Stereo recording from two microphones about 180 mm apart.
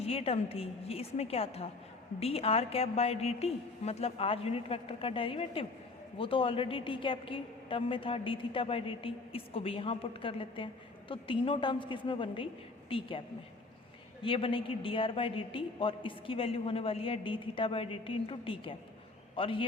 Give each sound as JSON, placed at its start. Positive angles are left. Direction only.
{"t": 0.0, "sound": "a woman's voice", "side_deg": 35}